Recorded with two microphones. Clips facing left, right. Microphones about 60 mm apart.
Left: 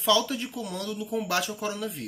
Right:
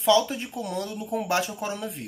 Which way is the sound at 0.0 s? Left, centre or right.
Right.